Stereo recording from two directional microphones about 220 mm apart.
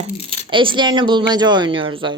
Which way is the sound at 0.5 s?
20° right (ahead or behind).